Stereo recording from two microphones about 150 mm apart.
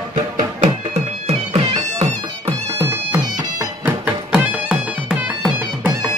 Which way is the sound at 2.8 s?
15° right (ahead or behind).